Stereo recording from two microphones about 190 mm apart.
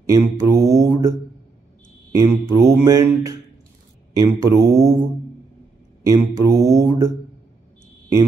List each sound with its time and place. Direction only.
0.0 s mantra: 15° right (ahead or behind)
2.1 s mantra: 15° right (ahead or behind)
6.0 s mantra: 15° right (ahead or behind)